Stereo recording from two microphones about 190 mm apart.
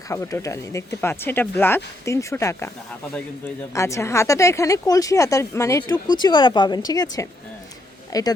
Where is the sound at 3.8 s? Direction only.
15° left (ahead or behind).